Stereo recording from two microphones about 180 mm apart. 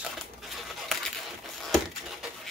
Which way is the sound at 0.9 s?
Centre (ahead or behind).